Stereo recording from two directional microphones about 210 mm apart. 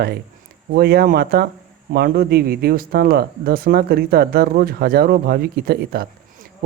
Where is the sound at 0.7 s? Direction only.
50° right (ahead or behind).